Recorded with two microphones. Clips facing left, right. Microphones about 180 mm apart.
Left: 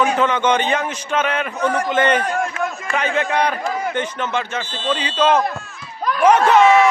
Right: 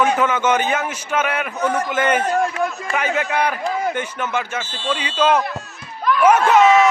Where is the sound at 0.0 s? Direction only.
5° right (ahead or behind).